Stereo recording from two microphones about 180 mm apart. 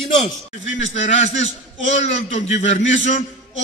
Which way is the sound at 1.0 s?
45° left (ahead or behind).